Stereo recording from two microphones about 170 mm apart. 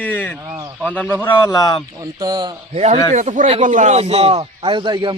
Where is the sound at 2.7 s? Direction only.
40° right (ahead or behind).